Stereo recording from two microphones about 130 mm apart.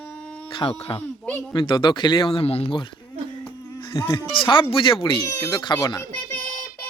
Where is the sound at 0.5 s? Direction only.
45° left (ahead or behind).